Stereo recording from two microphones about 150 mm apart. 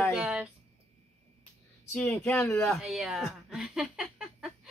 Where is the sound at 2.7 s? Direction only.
Centre (ahead or behind).